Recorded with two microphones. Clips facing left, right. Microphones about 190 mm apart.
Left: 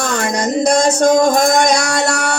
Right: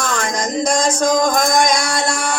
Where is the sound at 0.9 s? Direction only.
65° left (ahead or behind).